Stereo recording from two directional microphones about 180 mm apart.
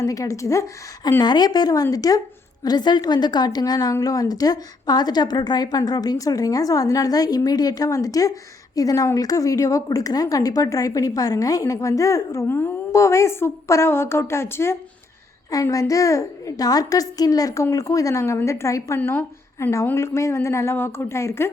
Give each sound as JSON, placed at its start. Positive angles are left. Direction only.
{"t": 0.0, "sound": "a woman's voice", "side_deg": 20}